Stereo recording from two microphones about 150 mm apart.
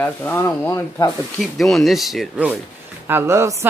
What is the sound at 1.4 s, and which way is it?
Speech, centre (ahead or behind).